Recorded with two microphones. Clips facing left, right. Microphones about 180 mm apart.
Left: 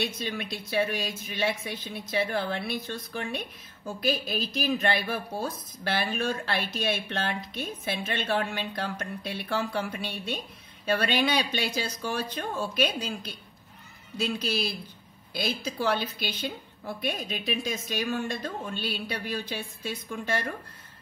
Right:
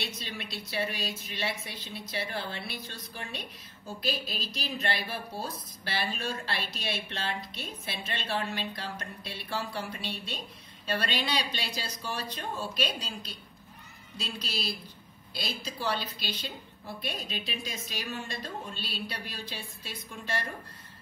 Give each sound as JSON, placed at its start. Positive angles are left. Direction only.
{"t": 0.0, "sound": "a woman's voice", "side_deg": 50}